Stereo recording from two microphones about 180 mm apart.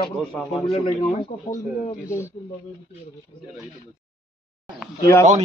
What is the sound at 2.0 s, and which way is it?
Speech, 15° left (ahead or behind).